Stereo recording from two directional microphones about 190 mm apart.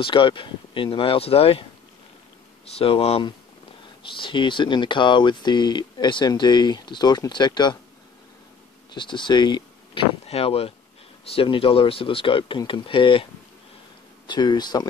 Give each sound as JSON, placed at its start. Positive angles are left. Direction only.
{"t": 0.0, "sound": "speech", "side_deg": 25}
{"t": 8.9, "sound": "speech", "side_deg": 25}